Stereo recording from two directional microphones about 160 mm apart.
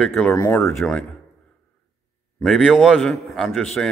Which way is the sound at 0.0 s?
Centre (ahead or behind).